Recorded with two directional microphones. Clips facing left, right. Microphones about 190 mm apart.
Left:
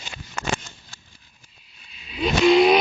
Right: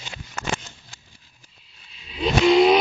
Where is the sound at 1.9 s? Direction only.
10° left (ahead or behind).